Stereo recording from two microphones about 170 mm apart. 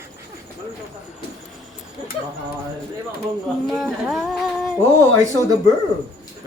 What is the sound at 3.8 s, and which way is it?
Singing, centre (ahead or behind).